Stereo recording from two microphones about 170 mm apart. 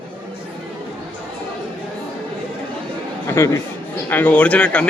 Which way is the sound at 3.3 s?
15° left (ahead or behind).